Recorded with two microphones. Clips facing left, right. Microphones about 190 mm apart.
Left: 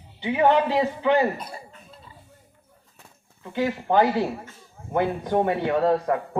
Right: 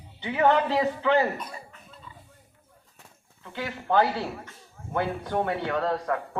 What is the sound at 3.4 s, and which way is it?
Speech, 15° left (ahead or behind).